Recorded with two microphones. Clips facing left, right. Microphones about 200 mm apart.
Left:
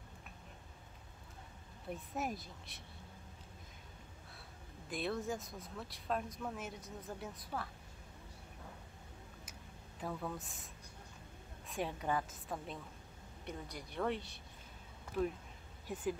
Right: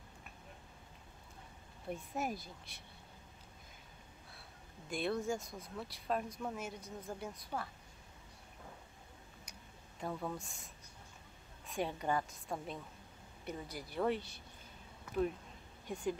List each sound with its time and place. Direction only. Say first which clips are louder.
1.9 s speech: right 1 dB; centre (ahead or behind)
4.8 s speech: right 2 dB; centre (ahead or behind)
9.5 s a sound: left 2 dB; centre (ahead or behind)
11.6 s speech: right 2 dB; centre (ahead or behind)
15.9 s speech: right 1 dB; 5° left (ahead or behind)